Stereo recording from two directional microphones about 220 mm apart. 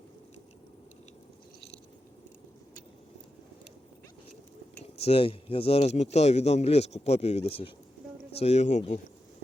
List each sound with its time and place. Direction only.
4.9 s speech: 25° left (ahead or behind)